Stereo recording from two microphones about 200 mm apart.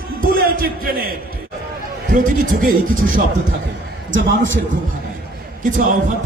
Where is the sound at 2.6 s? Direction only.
40° right (ahead or behind).